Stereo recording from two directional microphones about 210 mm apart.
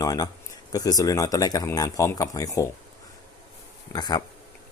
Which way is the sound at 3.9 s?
20° left (ahead or behind).